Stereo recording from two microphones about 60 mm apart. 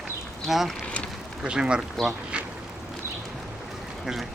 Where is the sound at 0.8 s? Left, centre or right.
Centre.